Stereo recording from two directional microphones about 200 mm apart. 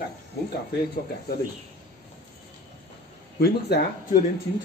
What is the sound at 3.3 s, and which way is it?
Speech, 50° left (ahead or behind).